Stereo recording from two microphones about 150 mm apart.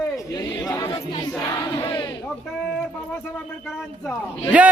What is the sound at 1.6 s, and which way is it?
Speech, 20° left (ahead or behind).